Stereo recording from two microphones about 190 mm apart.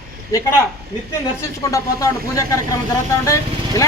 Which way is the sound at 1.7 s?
15° left (ahead or behind).